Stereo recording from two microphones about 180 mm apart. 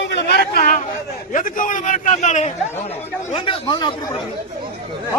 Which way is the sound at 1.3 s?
50° left (ahead or behind).